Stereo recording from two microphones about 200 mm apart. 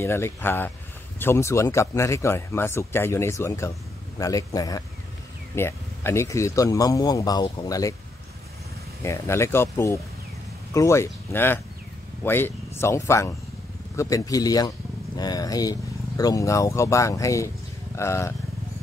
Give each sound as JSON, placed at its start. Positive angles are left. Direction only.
{"t": 0.0, "sound": "a man's voice", "side_deg": 10}
{"t": 9.0, "sound": "speech", "side_deg": 15}